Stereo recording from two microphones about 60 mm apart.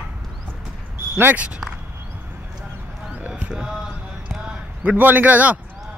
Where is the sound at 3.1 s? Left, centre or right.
Right.